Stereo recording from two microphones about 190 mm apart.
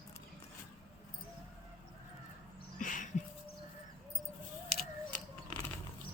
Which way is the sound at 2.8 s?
45° left (ahead or behind).